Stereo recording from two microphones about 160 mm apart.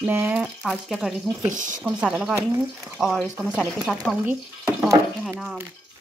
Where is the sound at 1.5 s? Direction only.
55° right (ahead or behind).